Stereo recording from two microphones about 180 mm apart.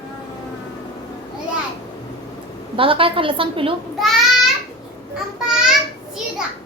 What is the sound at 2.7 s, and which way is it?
A woman's voice, 30° right (ahead or behind).